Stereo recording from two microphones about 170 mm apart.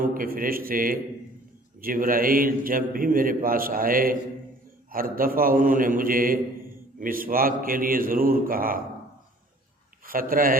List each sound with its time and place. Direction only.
0.0 s a man's voice: 55° right (ahead or behind)
10.1 s a man's voice: 55° right (ahead or behind)